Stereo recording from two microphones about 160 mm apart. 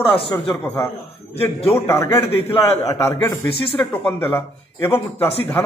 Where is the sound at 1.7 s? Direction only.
20° left (ahead or behind).